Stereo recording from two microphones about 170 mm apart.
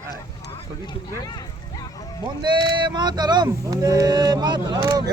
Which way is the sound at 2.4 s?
30° right (ahead or behind).